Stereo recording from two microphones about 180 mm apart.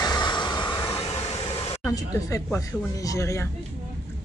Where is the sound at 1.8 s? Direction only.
20° left (ahead or behind).